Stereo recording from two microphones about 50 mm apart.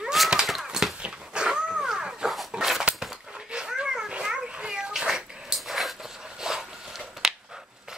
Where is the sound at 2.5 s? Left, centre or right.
Centre.